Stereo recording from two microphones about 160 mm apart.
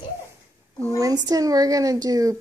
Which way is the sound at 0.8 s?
20° right (ahead or behind).